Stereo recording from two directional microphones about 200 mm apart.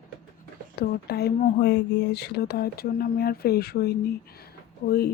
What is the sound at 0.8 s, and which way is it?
Speech, 50° left (ahead or behind).